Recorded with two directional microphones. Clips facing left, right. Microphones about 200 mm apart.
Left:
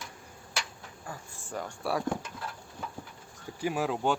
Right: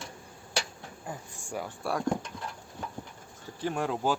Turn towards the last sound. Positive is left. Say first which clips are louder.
# even
turn(degrees=0)  # may be behind; listen again after turning